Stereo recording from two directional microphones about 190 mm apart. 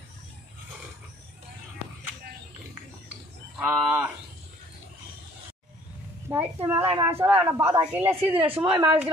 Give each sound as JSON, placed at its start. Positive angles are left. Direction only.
{"t": 3.5, "sound": "speech", "side_deg": -10}
{"t": 6.2, "sound": "speech", "side_deg": -10}
{"t": 6.8, "sound": "a woman's voice", "side_deg": -30}
{"t": 7.1, "sound": "speech", "side_deg": -10}
{"t": 8.3, "sound": "a woman's voice", "side_deg": -30}
{"t": 8.7, "sound": "speech", "side_deg": -10}